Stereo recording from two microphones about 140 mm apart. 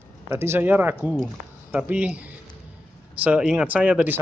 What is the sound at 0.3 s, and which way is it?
Speech, 15° right (ahead or behind).